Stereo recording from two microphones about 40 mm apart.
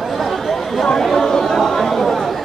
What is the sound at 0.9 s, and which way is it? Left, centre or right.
Chatter, centre.